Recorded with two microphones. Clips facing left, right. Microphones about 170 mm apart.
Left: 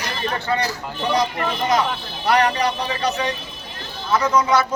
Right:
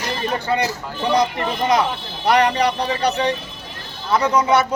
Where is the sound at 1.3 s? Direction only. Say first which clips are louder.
Right 2 dB; 25° right (ahead or behind).